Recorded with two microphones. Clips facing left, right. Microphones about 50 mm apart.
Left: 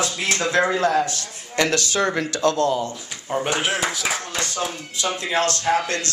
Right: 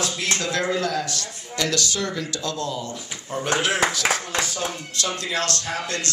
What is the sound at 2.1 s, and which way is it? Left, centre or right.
Speech, left.